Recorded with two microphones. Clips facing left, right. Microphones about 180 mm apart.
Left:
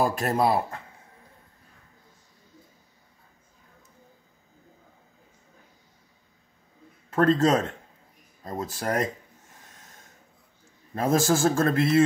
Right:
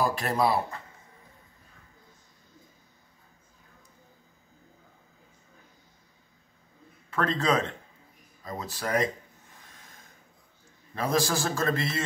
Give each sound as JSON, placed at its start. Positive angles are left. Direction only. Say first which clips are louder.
{"t": 0.0, "sound": "a man's voice", "louder": "left 2 dB", "side_deg": 45}
{"t": 7.1, "sound": "a man's voice", "louder": "left 6 dB", "side_deg": 45}
{"t": 11.0, "sound": "a man's voice", "louder": "left 5 dB", "side_deg": 45}